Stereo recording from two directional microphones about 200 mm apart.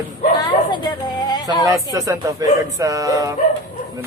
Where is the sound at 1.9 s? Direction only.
15° right (ahead or behind).